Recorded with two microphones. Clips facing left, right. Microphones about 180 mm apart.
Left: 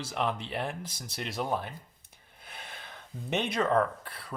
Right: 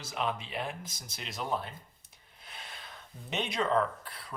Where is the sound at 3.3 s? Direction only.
55° left (ahead or behind).